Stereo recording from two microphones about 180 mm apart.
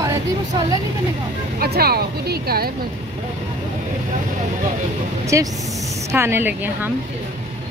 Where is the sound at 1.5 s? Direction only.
60° right (ahead or behind).